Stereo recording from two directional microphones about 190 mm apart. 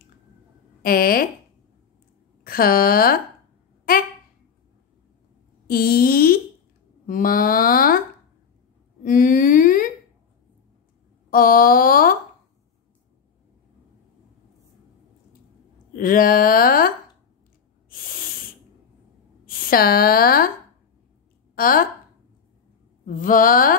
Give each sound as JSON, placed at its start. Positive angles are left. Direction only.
{"t": 0.8, "sound": "speech", "side_deg": 50}
{"t": 2.4, "sound": "speech", "side_deg": 50}
{"t": 5.7, "sound": "a sound", "side_deg": 50}
{"t": 7.1, "sound": "speech", "side_deg": 45}
{"t": 9.0, "sound": "a sound", "side_deg": 45}
{"t": 11.2, "sound": "speech", "side_deg": 50}
{"t": 15.9, "sound": "speech", "side_deg": 45}
{"t": 17.8, "sound": "a sound", "side_deg": 50}
{"t": 19.4, "sound": "speech", "side_deg": 50}
{"t": 21.5, "sound": "speech", "side_deg": 50}
{"t": 23.0, "sound": "speech", "side_deg": 45}